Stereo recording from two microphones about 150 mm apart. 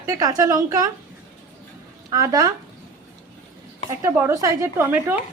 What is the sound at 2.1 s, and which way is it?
Speech, 25° right (ahead or behind).